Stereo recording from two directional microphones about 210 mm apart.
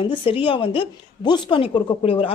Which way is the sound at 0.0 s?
25° left (ahead or behind).